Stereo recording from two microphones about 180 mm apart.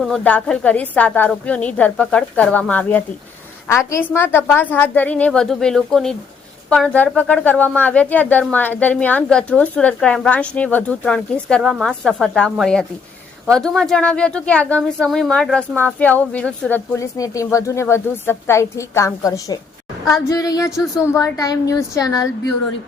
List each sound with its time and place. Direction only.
0.0 s a woman's voice: 5° left (ahead or behind)